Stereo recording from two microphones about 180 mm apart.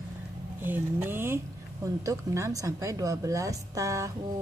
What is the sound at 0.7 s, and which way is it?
A woman's voice, 10° right (ahead or behind).